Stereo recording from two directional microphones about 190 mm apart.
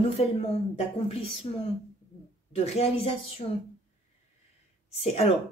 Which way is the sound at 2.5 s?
35° left (ahead or behind).